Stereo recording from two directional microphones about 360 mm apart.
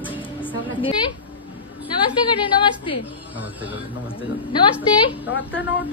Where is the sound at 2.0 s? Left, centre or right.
Centre.